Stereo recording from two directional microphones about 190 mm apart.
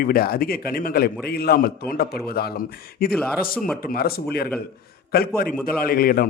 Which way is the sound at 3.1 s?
5° left (ahead or behind).